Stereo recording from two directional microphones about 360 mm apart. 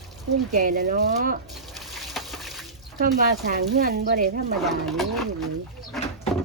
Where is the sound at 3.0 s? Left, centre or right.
Right.